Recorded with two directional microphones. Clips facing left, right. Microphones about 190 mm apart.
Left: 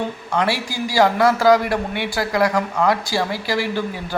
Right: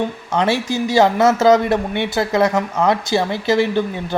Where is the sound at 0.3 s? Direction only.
20° right (ahead or behind).